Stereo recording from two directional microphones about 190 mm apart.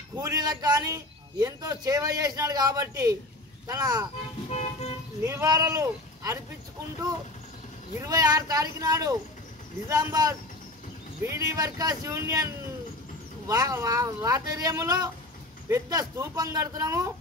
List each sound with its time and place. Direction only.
0.1 s a man's voice: 20° right (ahead or behind)
5.2 s speech: 15° right (ahead or behind)
8.0 s a man's voice: 20° right (ahead or behind)
13.5 s a man's voice: 20° right (ahead or behind)